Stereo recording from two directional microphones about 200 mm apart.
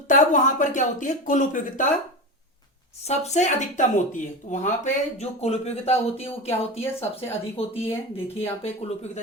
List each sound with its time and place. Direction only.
0.1 s speech: 40° left (ahead or behind)
3.0 s speech: 35° left (ahead or behind)
6.8 s speech: 10° left (ahead or behind)
7.5 s speech: 30° left (ahead or behind)